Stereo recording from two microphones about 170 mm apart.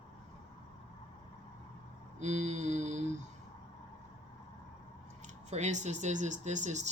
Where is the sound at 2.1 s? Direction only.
40° right (ahead or behind).